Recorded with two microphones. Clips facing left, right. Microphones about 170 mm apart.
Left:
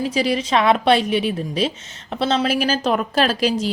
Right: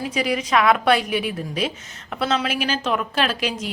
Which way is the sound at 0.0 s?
30° left (ahead or behind).